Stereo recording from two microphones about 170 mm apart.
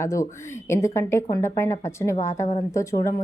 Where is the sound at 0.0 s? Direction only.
15° left (ahead or behind).